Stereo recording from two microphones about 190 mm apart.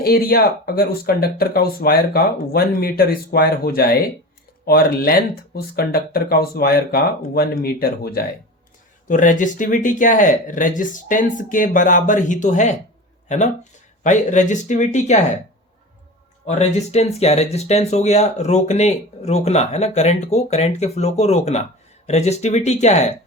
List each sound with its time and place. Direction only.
0.0 s speech: 50° left (ahead or behind)
9.0 s speech: 40° left (ahead or behind)
16.5 s speech: 35° left (ahead or behind)